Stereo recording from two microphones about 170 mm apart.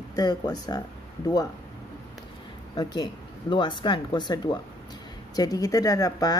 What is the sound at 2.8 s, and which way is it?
Speech, 25° left (ahead or behind).